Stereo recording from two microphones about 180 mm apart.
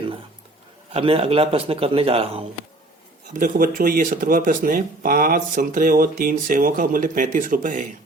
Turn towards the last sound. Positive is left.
turn(degrees=-45)  # may be behind; listen again after turning